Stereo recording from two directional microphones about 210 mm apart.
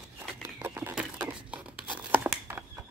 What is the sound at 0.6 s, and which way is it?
Tearing, 10° right (ahead or behind).